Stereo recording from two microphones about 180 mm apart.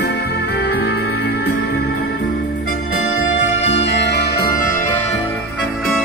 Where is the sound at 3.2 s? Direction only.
90° left; by 4.7 s 55° left (ahead or behind).